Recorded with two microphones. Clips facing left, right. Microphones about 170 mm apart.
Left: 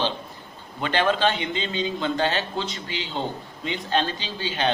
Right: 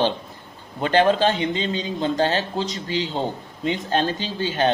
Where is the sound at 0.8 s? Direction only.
40° right (ahead or behind).